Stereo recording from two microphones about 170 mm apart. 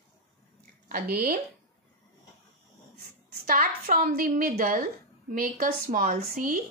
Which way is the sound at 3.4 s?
60° right (ahead or behind).